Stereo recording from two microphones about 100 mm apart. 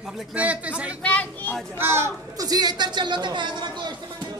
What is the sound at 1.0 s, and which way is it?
Speech, 15° left (ahead or behind).